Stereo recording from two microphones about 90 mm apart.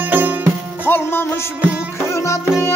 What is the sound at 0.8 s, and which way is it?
Music, 25° left (ahead or behind).